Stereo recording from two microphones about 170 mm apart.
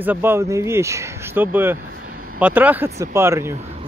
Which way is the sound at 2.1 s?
55° right (ahead or behind).